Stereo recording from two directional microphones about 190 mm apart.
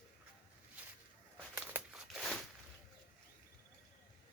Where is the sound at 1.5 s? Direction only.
5° right (ahead or behind).